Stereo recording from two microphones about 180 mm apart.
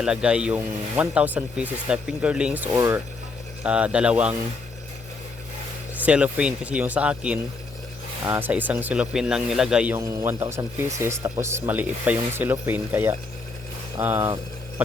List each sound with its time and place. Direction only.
0.0 s speech: 5° right (ahead or behind)
6.1 s speech: 5° right (ahead or behind)